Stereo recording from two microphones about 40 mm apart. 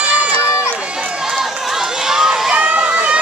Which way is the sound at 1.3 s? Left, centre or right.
Centre.